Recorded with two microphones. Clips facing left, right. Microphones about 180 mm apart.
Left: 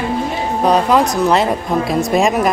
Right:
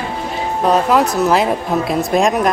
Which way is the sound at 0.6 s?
Centre (ahead or behind).